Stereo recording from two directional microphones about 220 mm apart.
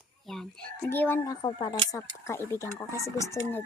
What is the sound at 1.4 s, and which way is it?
Speech, 20° left (ahead or behind).